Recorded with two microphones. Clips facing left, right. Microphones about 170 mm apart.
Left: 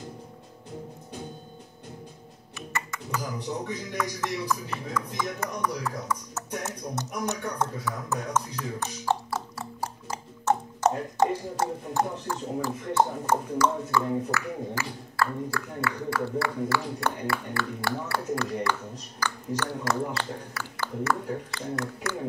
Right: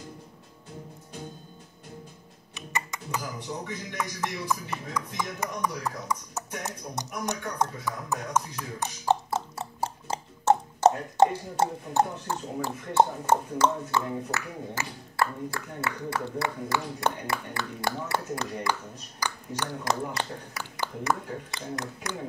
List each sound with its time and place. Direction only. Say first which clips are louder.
2.5 s music: even; 15° right (ahead or behind)
4.0 s speech: left 1 dB; 15° right (ahead or behind)